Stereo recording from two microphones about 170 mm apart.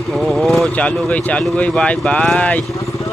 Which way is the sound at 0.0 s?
Centre (ahead or behind).